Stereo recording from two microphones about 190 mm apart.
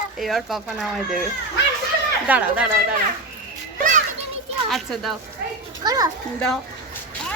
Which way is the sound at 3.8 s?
45° right (ahead or behind).